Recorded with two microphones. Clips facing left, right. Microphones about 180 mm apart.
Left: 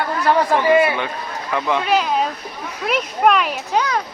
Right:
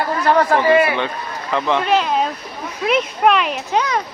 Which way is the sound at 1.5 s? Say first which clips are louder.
Right 2 dB; 20° right (ahead or behind).